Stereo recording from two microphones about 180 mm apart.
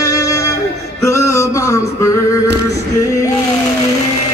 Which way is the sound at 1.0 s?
15° left (ahead or behind).